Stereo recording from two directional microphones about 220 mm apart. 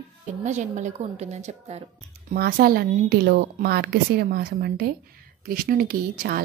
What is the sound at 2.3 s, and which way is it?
A woman's voice, 45° right (ahead or behind).